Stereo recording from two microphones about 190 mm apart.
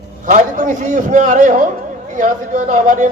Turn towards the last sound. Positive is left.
turn(degrees=-40)  # may be behind; listen again after turning